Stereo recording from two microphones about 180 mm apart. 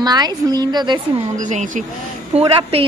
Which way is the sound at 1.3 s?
45° right (ahead or behind).